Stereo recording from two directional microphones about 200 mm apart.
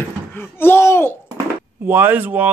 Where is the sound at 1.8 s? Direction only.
10° right (ahead or behind).